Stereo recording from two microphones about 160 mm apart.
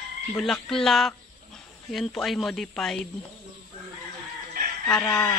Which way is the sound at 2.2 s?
Centre (ahead or behind).